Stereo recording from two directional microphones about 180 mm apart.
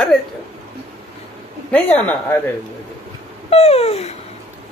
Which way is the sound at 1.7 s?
10° left (ahead or behind).